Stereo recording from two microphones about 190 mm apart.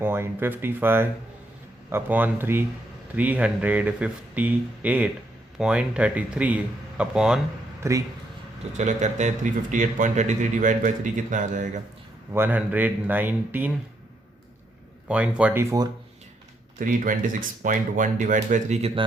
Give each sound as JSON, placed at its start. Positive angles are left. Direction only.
{"t": 0.0, "sound": "speech", "side_deg": -10}
{"t": 7.8, "sound": "speech", "side_deg": -15}
{"t": 8.8, "sound": "a man's voice", "side_deg": -40}
{"t": 12.3, "sound": "speech", "side_deg": -10}
{"t": 15.0, "sound": "speech", "side_deg": -5}
{"t": 16.8, "sound": "speech", "side_deg": -45}